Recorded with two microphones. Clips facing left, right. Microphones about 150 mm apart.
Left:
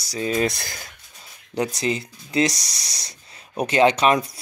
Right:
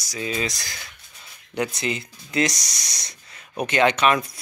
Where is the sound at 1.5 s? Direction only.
35° left (ahead or behind).